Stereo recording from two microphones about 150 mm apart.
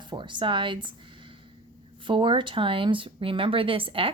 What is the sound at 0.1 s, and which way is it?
Speech, 30° right (ahead or behind).